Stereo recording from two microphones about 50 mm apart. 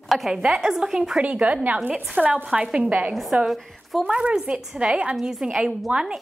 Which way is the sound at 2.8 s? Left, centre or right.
Right.